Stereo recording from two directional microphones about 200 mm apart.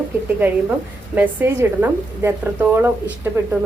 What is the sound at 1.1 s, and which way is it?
A woman's voice, 10° right (ahead or behind).